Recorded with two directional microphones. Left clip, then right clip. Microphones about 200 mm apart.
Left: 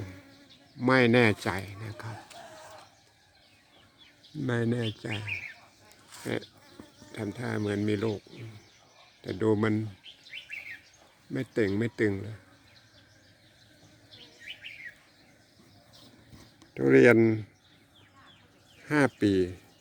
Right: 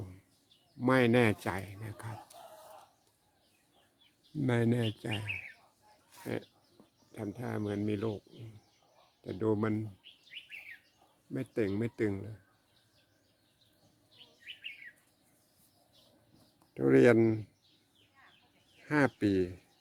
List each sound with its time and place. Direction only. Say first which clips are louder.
0.8 s speech: left 5 dB; 5° right (ahead or behind)
4.4 s speech: left 1 dB; 25° right (ahead or behind)
7.1 s speech: left 5 dB; 5° left (ahead or behind)
9.2 s speech: left 5 dB; 10° left (ahead or behind)
11.3 s speech: left 5 dB; 5° left (ahead or behind)
16.7 s speech: left 5 dB; 5° right (ahead or behind)
18.9 s speech: left 4 dB; centre (ahead or behind)